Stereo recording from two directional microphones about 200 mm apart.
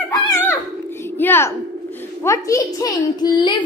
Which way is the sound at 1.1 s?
10° left (ahead or behind).